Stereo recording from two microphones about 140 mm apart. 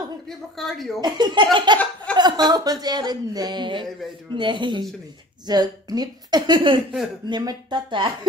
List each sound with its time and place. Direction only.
0.6 s a woman's voice: centre (ahead or behind)
1.0 s a woman's voice: 30° right (ahead or behind)